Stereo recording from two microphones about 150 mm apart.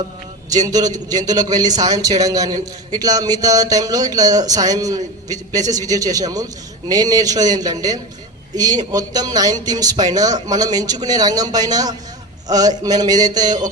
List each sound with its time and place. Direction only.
0.5 s a man's voice: 25° right (ahead or behind)